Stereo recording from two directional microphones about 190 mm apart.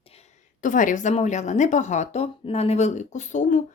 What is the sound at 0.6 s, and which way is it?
Speech, 45° left (ahead or behind).